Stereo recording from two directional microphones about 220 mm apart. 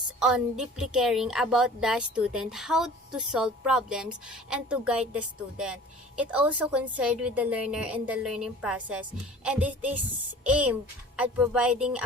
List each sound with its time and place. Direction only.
0.2 s a woman's voice: 5° right (ahead or behind)